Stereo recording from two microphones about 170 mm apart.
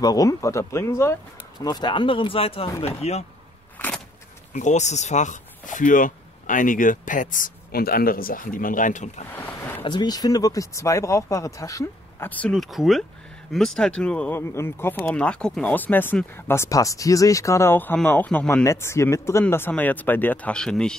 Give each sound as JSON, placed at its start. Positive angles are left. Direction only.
{"t": 0.0, "sound": "speech", "side_deg": 20}
{"t": 3.7, "sound": "vehicle", "side_deg": 10}
{"t": 4.6, "sound": "speech", "side_deg": 45}
{"t": 9.3, "sound": "a sound", "side_deg": 10}
{"t": 9.8, "sound": "speech", "side_deg": 25}